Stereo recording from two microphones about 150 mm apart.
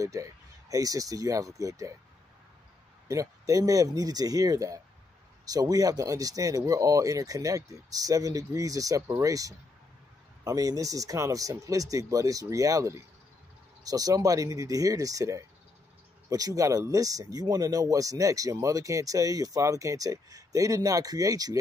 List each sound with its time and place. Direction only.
0.0 s speech: 20° right (ahead or behind)
3.1 s speech: 20° right (ahead or behind)